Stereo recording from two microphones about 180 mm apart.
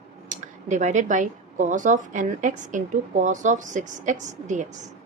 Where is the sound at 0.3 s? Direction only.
40° right (ahead or behind).